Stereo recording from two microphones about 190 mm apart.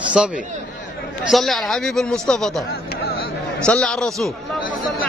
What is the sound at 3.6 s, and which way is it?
Speech, 5° left (ahead or behind).